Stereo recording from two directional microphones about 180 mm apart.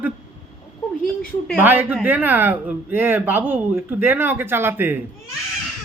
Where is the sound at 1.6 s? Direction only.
10° right (ahead or behind).